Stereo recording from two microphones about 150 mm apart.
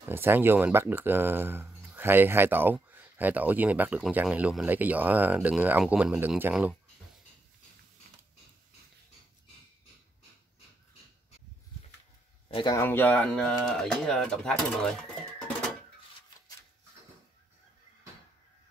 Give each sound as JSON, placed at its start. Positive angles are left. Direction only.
{"t": 0.1, "sound": "speech", "side_deg": -15}
{"t": 12.4, "sound": "a sound", "side_deg": 35}
{"t": 12.7, "sound": "speech", "side_deg": 15}